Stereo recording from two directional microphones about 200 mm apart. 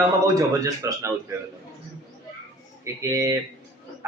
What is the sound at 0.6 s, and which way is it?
Speech, 15° right (ahead or behind).